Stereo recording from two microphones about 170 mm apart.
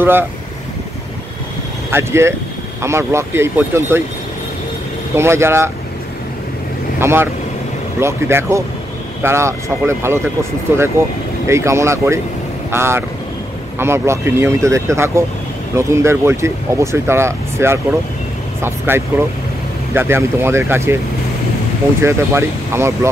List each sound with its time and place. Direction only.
0.0 s speech: 10° right (ahead or behind)
1.9 s speech: 15° right (ahead or behind)
5.1 s speech: 15° right (ahead or behind)
7.0 s speech: 15° right (ahead or behind)
22.0 s speech: 15° right (ahead or behind)